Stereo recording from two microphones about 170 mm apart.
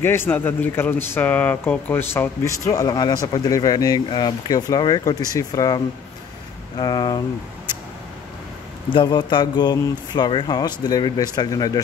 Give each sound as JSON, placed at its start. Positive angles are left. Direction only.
{"t": 0.0, "sound": "speech", "side_deg": 15}
{"t": 6.8, "sound": "speech", "side_deg": 25}
{"t": 8.9, "sound": "speech", "side_deg": 25}